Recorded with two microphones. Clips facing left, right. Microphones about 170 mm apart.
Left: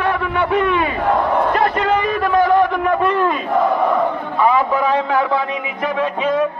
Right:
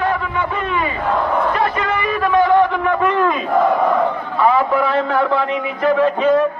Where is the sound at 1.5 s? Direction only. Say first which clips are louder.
Left 3 dB; 50° left (ahead or behind).